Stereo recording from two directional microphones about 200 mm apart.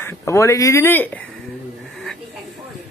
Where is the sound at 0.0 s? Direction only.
15° left (ahead or behind).